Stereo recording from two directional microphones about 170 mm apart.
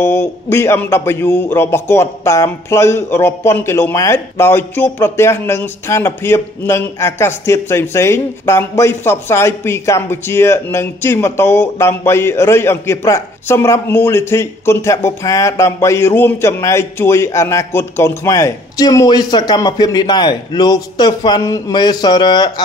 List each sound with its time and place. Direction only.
0.0 s a man's voice: 15° left (ahead or behind)